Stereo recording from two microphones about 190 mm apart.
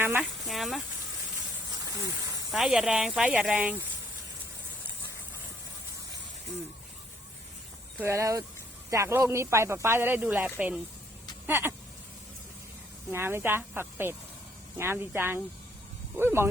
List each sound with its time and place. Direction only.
0.0 s speech: 10° right (ahead or behind)
0.4 s speech: centre (ahead or behind)
1.8 s a sound: 15° right (ahead or behind)
2.5 s speech: centre (ahead or behind)
7.9 s speech: 15° right (ahead or behind)
11.4 s a sound: 10° right (ahead or behind)
13.1 s speech: 10° right (ahead or behind)